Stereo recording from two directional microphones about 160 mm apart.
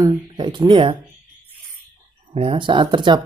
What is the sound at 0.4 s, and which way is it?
Speech, 30° right (ahead or behind).